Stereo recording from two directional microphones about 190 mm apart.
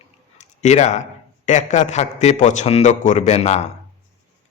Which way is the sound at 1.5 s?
40° left (ahead or behind).